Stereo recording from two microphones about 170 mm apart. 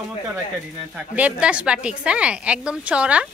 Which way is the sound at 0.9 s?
5° right (ahead or behind).